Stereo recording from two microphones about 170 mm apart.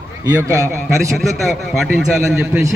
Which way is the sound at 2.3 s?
15° right (ahead or behind).